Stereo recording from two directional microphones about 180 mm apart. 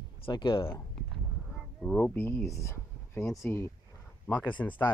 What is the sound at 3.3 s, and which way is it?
Speech, 15° left (ahead or behind).